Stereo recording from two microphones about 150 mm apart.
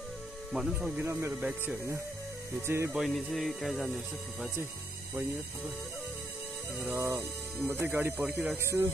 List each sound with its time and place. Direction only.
0.5 s speech: centre (ahead or behind)
0.8 s speech: 15° right (ahead or behind)
2.9 s speech: centre (ahead or behind)
7.0 s speech: 15° right (ahead or behind)